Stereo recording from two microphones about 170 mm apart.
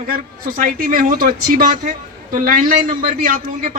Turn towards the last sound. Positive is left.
turn(degrees=-55)  # may be behind; listen again after turning